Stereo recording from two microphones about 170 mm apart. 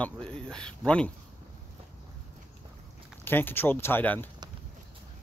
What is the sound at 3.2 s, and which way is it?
Speech, 10° left (ahead or behind).